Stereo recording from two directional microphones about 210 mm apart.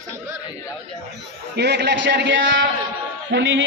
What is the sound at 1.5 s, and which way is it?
A man's voice, 55° right (ahead or behind).